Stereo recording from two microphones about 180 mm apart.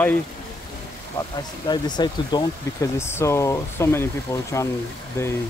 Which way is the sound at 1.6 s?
25° left (ahead or behind).